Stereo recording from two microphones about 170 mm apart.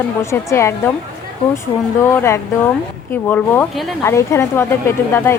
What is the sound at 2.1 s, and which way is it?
Speech, 15° left (ahead or behind).